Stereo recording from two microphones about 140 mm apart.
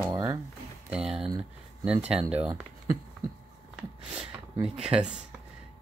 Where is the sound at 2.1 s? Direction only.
45° right (ahead or behind).